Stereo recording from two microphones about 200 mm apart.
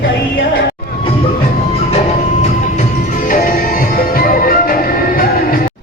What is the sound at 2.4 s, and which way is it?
Music, 40° left (ahead or behind).